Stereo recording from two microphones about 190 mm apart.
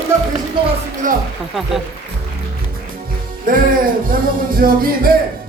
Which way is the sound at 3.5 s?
50° right (ahead or behind).